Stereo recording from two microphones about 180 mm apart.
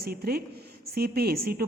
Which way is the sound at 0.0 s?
60° right (ahead or behind).